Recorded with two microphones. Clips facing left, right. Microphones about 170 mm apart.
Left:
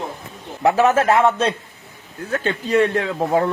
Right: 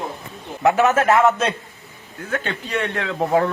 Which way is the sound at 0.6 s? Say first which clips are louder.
Left 1 dB; 30° left (ahead or behind).